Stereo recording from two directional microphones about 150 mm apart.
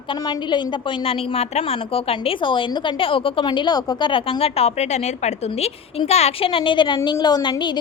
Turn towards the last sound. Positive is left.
turn(degrees=30)  # may be behind; listen again after turning